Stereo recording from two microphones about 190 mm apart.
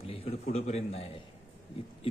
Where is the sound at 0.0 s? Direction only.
30° left (ahead or behind).